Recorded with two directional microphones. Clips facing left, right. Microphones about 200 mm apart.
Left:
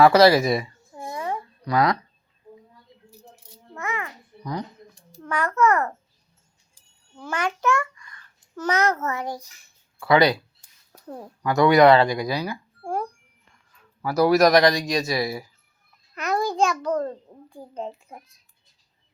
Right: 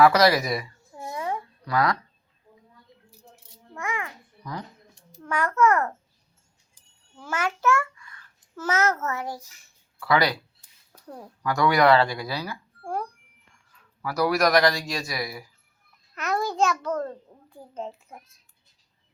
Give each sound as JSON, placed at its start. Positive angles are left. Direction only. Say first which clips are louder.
{"t": 0.0, "sound": "a man's voice", "louder": "left 4 dB", "side_deg": 30}
{"t": 0.9, "sound": "a sound", "louder": "left 1 dB", "side_deg": -5}
{"t": 1.6, "sound": "speech", "louder": "left 3 dB", "side_deg": 20}
{"t": 3.8, "sound": "a sound", "louder": "left 1 dB", "side_deg": -10}
{"t": 5.5, "sound": "a child's voice", "louder": "left 1 dB", "side_deg": -10}
{"t": 7.2, "sound": "a child's voice", "louder": "left 2 dB", "side_deg": -5}
{"t": 10.0, "sound": "a man's voice", "louder": "left 5 dB", "side_deg": 20}
{"t": 16.1, "sound": "babbling", "louder": "left 2 dB", "side_deg": 0}
{"t": 16.8, "sound": "a child's voice", "louder": "left 3 dB", "side_deg": 15}
{"t": 17.7, "sound": "a child's voice", "louder": "left 2 dB", "side_deg": 0}